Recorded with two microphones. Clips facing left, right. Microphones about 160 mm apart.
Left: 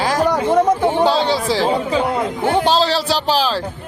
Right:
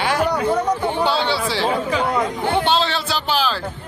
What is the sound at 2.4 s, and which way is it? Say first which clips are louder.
A man's voice: left 5 dB; 40° left (ahead or behind).